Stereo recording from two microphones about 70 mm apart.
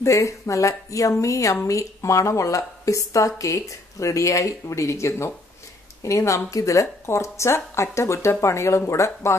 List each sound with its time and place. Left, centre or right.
0.0 s speech: left